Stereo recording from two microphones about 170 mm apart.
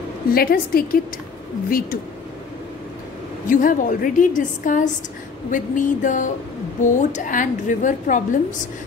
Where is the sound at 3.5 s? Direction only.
50° left (ahead or behind).